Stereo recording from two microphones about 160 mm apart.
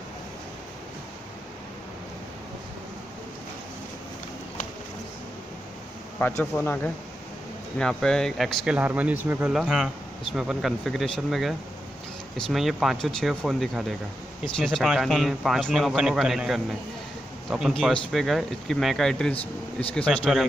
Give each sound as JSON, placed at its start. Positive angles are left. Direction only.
{"t": 6.1, "sound": "a man's voice", "side_deg": 10}
{"t": 19.3, "sound": "speech", "side_deg": 35}
{"t": 20.1, "sound": "a man's voice", "side_deg": 0}